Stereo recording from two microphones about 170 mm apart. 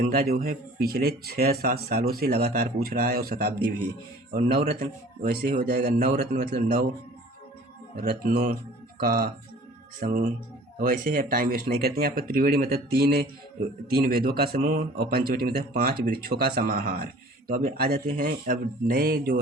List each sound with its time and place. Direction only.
0.0 s a man's voice: 65° right (ahead or behind)
8.0 s a man's voice: 55° right (ahead or behind)